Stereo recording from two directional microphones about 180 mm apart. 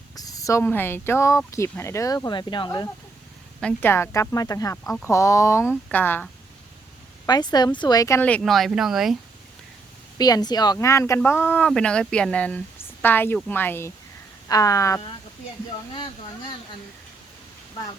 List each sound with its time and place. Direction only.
0.2 s speech: 20° left (ahead or behind)
3.6 s speech: 10° left (ahead or behind)
7.3 s speech: 20° left (ahead or behind); by 9.1 s centre (ahead or behind)
10.2 s speech: 20° left (ahead or behind)